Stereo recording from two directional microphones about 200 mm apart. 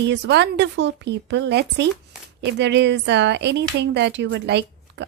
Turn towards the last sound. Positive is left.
turn(degrees=-60)  # may be behind; listen again after turning